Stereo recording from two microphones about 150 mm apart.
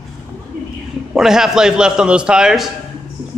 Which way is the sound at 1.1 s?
5° right (ahead or behind).